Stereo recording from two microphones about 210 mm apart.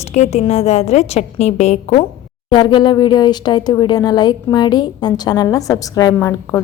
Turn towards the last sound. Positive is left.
turn(degrees=15)  # may be behind; listen again after turning